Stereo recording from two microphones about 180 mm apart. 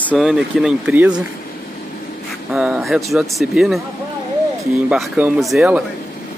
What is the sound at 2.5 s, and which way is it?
Speech, 5° right (ahead or behind).